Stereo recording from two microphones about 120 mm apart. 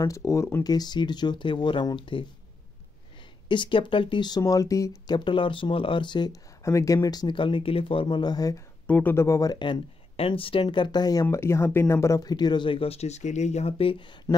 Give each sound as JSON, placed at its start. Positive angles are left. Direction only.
{"t": 0.0, "sound": "speech", "side_deg": 25}
{"t": 0.7, "sound": "speech", "side_deg": 35}
{"t": 3.4, "sound": "speech", "side_deg": 40}
{"t": 6.6, "sound": "speech", "side_deg": 25}
{"t": 8.8, "sound": "speech", "side_deg": 15}
{"t": 11.2, "sound": "speech", "side_deg": 20}